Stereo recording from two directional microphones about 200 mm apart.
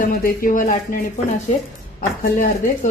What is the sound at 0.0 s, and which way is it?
Speech, 45° left (ahead or behind).